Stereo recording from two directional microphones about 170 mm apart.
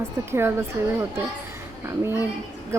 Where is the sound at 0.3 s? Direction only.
15° right (ahead or behind).